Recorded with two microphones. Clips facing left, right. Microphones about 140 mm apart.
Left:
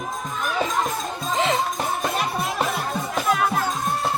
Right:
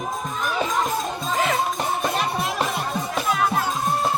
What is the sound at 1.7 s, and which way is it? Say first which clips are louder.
Music: right 1 dB; centre (ahead or behind).